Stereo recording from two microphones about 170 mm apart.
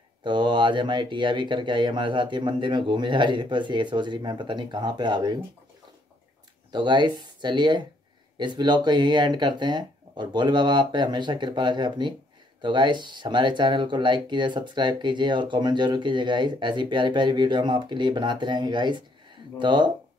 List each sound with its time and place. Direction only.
0.2 s speech: 25° right (ahead or behind)
6.7 s speech: 25° right (ahead or behind)